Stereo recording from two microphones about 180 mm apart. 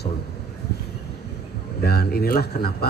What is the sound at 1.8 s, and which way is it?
Speech, 60° left (ahead or behind).